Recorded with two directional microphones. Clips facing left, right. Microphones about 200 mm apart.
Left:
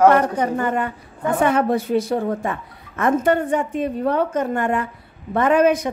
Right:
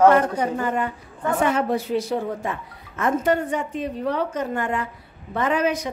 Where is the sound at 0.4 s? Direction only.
60° left (ahead or behind).